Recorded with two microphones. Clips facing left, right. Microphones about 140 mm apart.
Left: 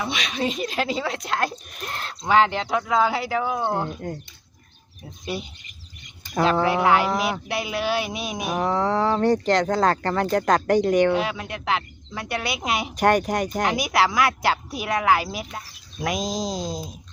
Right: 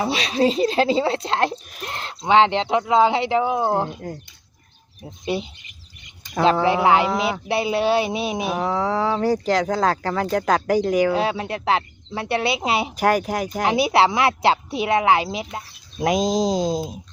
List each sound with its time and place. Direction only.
0.0 s speech: 30° right (ahead or behind)
3.8 s speech: centre (ahead or behind)
5.2 s speech: 25° right (ahead or behind)
6.4 s speech: centre (ahead or behind)
6.8 s speech: 25° right (ahead or behind)
8.5 s speech: centre (ahead or behind)
11.1 s speech: 30° right (ahead or behind)
13.0 s speech: 5° right (ahead or behind)
13.7 s speech: 30° right (ahead or behind)